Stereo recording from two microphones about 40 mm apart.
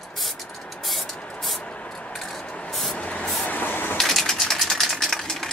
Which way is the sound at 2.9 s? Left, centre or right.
Left.